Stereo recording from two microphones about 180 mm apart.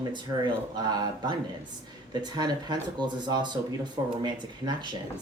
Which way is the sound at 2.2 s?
25° right (ahead or behind).